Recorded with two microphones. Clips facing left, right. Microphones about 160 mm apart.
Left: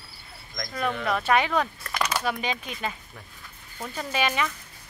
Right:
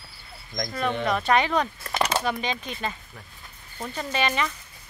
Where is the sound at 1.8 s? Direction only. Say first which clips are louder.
Right 3 dB; 25° right (ahead or behind).